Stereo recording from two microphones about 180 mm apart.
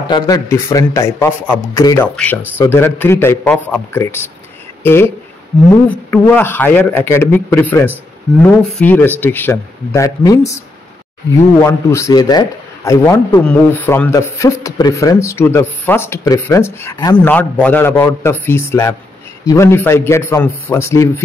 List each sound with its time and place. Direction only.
0.1 s a man's voice: 20° left (ahead or behind)
2.1 s speech: 10° left (ahead or behind)
11.6 s a man's voice: 15° left (ahead or behind)
17.3 s speech: 10° left (ahead or behind)